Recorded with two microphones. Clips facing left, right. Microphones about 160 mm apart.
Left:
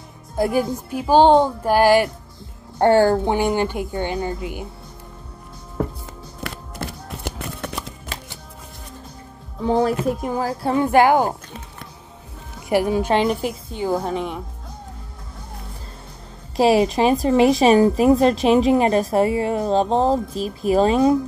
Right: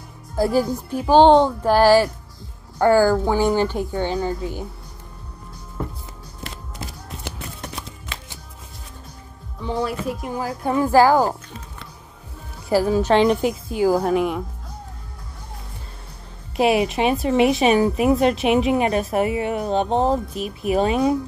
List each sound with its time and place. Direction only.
0.4 s a woman's voice: 20° left (ahead or behind)
2.8 s speech: 25° left (ahead or behind)
6.8 s a sound: 65° left (ahead or behind)
8.1 s music: 40° left (ahead or behind)
9.6 s a woman's voice: 45° left (ahead or behind); by 11.3 s 20° left (ahead or behind)
12.6 s a woman's voice: 15° left (ahead or behind)
13.1 s a woman's voice: 5° left (ahead or behind)
16.5 s a woman's voice: 35° left (ahead or behind)